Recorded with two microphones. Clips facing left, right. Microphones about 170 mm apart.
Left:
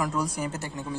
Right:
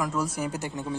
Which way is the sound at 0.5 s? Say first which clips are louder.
Right 2 dB; 20° right (ahead or behind).